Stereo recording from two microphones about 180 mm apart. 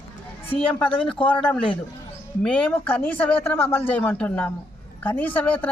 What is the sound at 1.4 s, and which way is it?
A man's voice, 5° left (ahead or behind).